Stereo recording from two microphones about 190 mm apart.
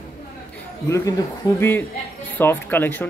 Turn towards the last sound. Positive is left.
turn(degrees=10)  # may be behind; listen again after turning